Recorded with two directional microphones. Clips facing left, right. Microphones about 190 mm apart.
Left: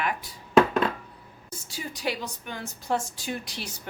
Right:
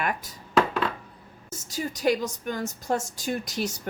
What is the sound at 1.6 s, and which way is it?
Speech, 45° right (ahead or behind).